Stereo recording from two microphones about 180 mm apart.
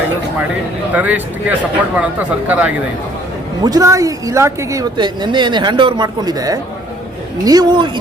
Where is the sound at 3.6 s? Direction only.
20° right (ahead or behind).